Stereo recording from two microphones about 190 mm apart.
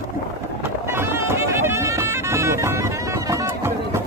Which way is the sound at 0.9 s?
10° right (ahead or behind).